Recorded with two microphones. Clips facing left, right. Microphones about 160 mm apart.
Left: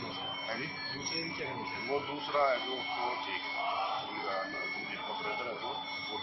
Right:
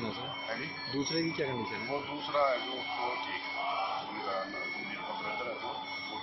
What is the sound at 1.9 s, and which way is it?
Speech, centre (ahead or behind).